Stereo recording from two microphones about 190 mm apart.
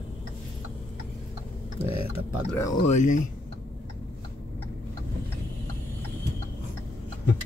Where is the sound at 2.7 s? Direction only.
40° left (ahead or behind).